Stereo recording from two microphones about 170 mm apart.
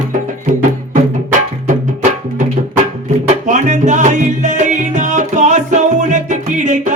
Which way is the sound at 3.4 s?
45° right (ahead or behind).